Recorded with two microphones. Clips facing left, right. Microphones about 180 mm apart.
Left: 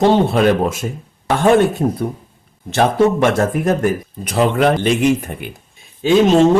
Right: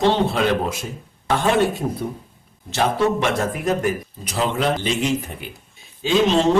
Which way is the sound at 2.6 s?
55° left (ahead or behind).